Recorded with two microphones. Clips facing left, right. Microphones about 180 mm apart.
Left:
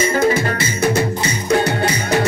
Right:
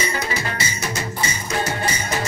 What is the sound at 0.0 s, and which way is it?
Music, 50° left (ahead or behind).